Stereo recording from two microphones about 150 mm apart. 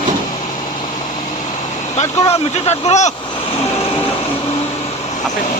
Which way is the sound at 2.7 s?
50° left (ahead or behind).